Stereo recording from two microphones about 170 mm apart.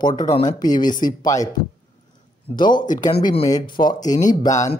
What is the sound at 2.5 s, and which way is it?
Speech, 25° left (ahead or behind).